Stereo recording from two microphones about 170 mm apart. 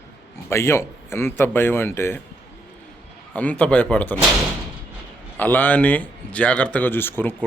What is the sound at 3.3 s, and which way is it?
Speech, 10° left (ahead or behind).